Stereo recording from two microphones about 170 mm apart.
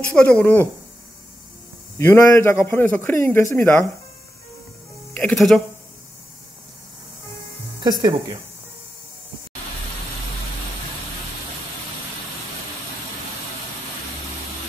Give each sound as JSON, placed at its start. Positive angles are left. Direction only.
{"t": 0.0, "sound": "a man's voice", "side_deg": 10}
{"t": 2.0, "sound": "a man's voice", "side_deg": 15}
{"t": 5.1, "sound": "speech", "side_deg": 5}
{"t": 7.8, "sound": "speech", "side_deg": -25}